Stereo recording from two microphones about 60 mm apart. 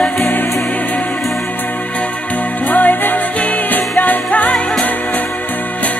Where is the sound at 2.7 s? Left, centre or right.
Left.